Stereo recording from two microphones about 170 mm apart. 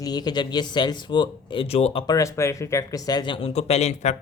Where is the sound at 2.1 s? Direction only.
15° left (ahead or behind).